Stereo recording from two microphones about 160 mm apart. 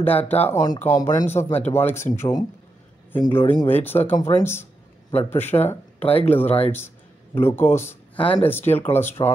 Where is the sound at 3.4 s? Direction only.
35° left (ahead or behind).